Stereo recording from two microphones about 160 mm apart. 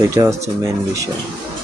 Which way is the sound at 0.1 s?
20° right (ahead or behind).